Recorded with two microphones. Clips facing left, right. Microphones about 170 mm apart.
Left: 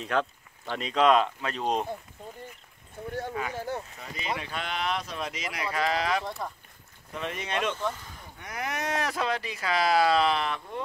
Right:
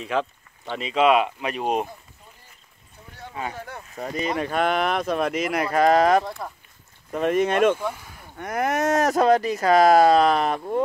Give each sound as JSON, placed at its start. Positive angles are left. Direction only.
{"t": 0.0, "sound": "speech", "side_deg": 0}
{"t": 3.1, "sound": "a sound", "side_deg": 50}
{"t": 3.5, "sound": "speech", "side_deg": 30}
{"t": 4.0, "sound": "speech", "side_deg": -45}
{"t": 6.2, "sound": "speech", "side_deg": 0}
{"t": 7.1, "sound": "speech", "side_deg": -50}
{"t": 7.7, "sound": "speech", "side_deg": -10}
{"t": 8.4, "sound": "speech", "side_deg": -50}